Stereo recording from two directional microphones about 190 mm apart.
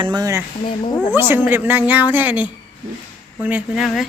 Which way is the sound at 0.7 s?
25° left (ahead or behind).